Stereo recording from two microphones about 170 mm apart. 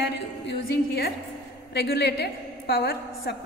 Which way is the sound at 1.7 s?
80° left.